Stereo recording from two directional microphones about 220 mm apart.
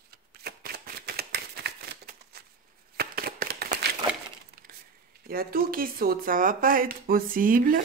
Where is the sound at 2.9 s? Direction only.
45° right (ahead or behind).